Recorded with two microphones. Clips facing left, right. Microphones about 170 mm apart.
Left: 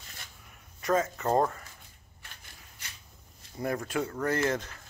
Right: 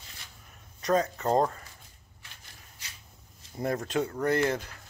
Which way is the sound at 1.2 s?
15° right (ahead or behind).